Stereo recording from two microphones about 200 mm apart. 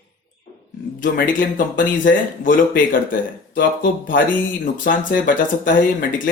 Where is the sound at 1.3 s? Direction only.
40° left (ahead or behind).